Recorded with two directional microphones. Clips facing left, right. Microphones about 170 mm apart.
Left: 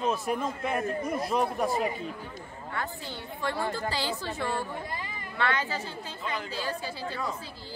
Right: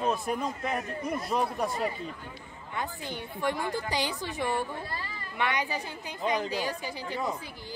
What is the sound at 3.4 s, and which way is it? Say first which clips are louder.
A child's voice: even; 15° right (ahead or behind).